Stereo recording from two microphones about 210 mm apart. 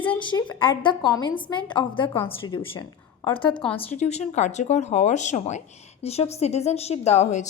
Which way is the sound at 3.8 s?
30° left (ahead or behind).